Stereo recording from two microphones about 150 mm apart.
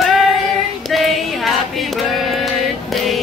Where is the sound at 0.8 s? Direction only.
Centre (ahead or behind).